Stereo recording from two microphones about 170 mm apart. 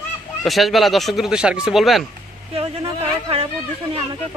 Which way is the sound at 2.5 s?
35° right (ahead or behind).